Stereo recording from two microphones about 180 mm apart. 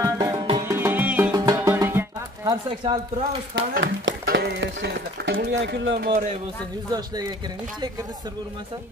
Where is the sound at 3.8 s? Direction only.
75° right (ahead or behind).